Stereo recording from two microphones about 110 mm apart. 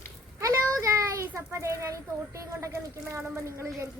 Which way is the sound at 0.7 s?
30° right (ahead or behind).